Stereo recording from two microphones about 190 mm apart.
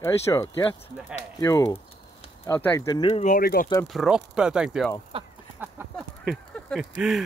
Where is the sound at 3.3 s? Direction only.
50° left (ahead or behind).